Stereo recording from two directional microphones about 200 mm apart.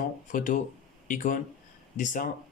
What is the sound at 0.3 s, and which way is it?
Speech, 40° left (ahead or behind).